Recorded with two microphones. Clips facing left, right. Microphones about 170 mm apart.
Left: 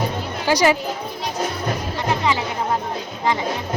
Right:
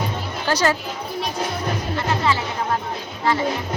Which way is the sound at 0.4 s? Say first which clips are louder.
Left 3 dB; 15° left (ahead or behind).